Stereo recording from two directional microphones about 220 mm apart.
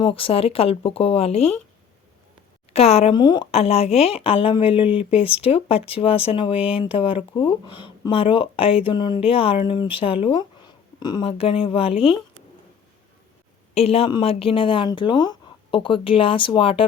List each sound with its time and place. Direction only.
0.0 s speech: 25° left (ahead or behind)
2.7 s speech: 25° left (ahead or behind)
13.7 s speech: 25° left (ahead or behind)